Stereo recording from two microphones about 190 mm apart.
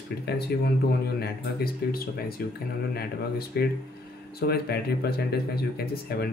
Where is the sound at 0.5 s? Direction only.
60° left (ahead or behind).